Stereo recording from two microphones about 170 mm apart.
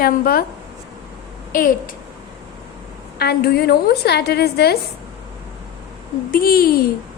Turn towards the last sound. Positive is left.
turn(degrees=60)  # may be behind; listen again after turning